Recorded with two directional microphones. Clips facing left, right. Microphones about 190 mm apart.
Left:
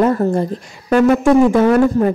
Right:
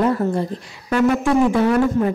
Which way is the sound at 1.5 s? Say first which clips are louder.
Left 4 dB; 45° left (ahead or behind).